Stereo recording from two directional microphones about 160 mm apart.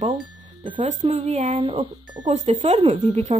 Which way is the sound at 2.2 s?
50° right (ahead or behind).